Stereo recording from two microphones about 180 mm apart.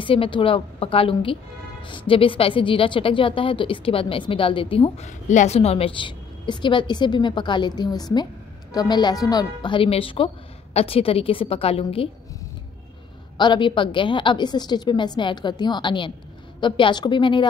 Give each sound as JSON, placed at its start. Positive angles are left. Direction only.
{"t": 0.0, "sound": "a woman's voice", "side_deg": 30}
{"t": 13.4, "sound": "a woman's voice", "side_deg": 25}